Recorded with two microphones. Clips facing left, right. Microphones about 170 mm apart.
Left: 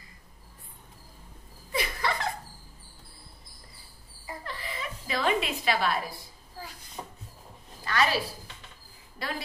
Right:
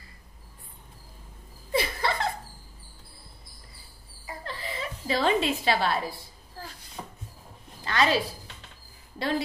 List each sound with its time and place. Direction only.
1.7 s laughter: 30° right (ahead or behind)
4.5 s a woman's voice: 30° right (ahead or behind)
7.8 s a woman's voice: 25° right (ahead or behind)